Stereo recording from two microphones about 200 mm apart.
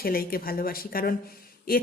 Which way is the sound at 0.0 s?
50° left (ahead or behind).